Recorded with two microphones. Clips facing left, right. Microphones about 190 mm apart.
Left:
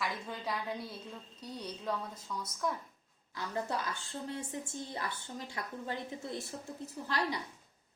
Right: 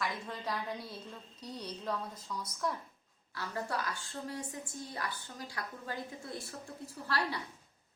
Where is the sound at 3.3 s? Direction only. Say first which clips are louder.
Left 1 dB; 20° left (ahead or behind).